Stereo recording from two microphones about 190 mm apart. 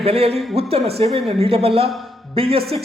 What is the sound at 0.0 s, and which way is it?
A woman's voice, 30° right (ahead or behind).